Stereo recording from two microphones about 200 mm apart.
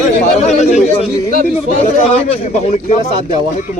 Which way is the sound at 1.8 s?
30° left (ahead or behind).